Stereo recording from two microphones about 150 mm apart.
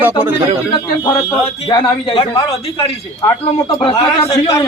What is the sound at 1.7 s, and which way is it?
Speech, 35° left (ahead or behind).